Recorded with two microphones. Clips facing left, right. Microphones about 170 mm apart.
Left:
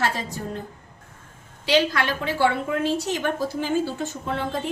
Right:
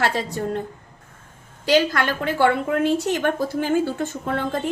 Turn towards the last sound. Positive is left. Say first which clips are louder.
# right 3 dB
turn(degrees=-50)  # may be behind; listen again after turning